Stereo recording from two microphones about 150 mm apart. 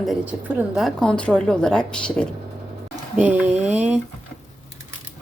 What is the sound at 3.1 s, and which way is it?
Speech, 10° right (ahead or behind).